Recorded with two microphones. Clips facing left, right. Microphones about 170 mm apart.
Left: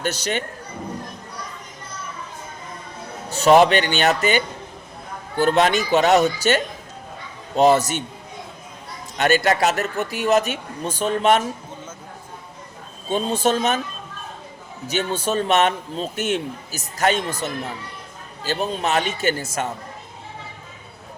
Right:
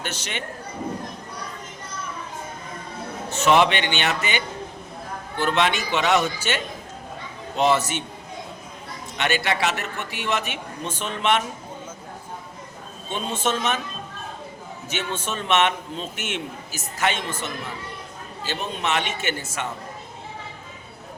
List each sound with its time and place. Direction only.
0.0 s a man's voice: 40° left (ahead or behind)
3.3 s a man's voice: 40° left (ahead or behind)
9.1 s a man's voice: 40° left (ahead or behind)
13.1 s a man's voice: 35° left (ahead or behind)
14.8 s a man's voice: 35° left (ahead or behind)